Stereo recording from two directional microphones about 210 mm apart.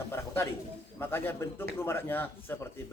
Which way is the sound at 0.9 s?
10° left (ahead or behind).